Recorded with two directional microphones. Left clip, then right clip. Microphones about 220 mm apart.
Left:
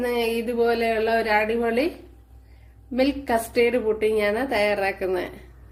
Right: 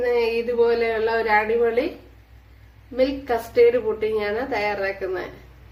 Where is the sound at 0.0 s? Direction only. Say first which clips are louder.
Right 3 dB; 40° left (ahead or behind).